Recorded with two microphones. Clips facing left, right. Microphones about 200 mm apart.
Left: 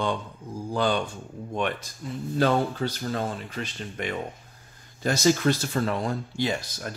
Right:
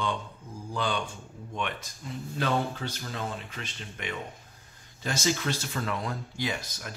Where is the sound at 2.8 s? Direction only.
40° left (ahead or behind).